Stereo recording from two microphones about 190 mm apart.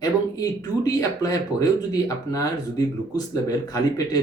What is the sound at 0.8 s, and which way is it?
Speech, 20° left (ahead or behind).